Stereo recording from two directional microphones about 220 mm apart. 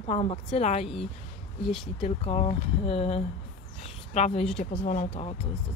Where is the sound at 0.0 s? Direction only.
30° left (ahead or behind).